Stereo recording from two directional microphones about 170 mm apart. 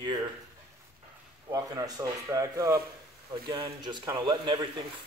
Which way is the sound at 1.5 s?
20° right (ahead or behind).